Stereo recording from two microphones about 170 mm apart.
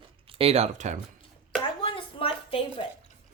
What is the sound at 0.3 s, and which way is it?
Speech, 35° right (ahead or behind).